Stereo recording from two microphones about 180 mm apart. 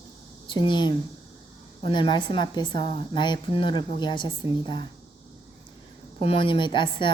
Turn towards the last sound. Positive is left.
turn(degrees=25)  # may be behind; listen again after turning